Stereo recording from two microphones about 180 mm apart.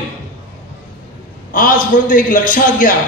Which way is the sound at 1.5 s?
50° left (ahead or behind).